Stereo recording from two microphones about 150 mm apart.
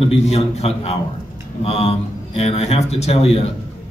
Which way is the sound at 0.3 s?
45° left (ahead or behind).